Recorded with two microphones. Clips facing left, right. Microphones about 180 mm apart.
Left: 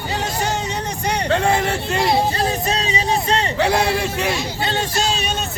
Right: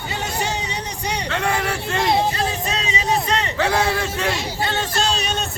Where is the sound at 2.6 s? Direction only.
35° left (ahead or behind).